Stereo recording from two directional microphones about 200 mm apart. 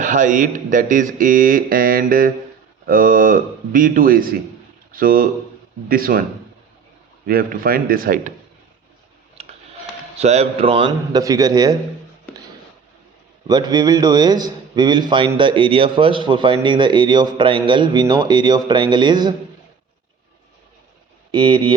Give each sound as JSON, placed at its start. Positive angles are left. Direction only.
{"t": 0.0, "sound": "a man's voice", "side_deg": -40}
{"t": 7.3, "sound": "speech", "side_deg": -45}
{"t": 9.4, "sound": "tick-tock", "side_deg": -30}
{"t": 10.2, "sound": "a man's voice", "side_deg": -30}
{"t": 13.5, "sound": "a man's voice", "side_deg": -20}
{"t": 21.3, "sound": "a man's voice", "side_deg": -25}